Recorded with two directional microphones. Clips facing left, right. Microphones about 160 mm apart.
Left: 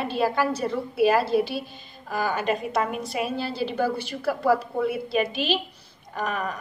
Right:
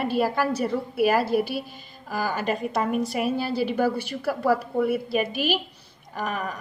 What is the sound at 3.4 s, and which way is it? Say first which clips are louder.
Speech: right 3 dB; 10° right (ahead or behind).